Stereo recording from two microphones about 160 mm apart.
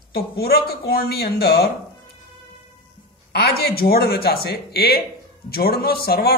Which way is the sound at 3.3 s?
85° left.